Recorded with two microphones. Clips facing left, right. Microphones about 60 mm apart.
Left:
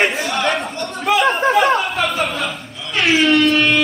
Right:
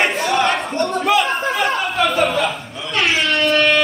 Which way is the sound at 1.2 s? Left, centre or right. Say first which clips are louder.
Left 5 dB; left.